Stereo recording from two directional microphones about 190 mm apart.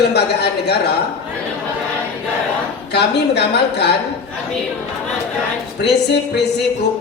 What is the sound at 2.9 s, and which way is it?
Speech, 60° left (ahead or behind).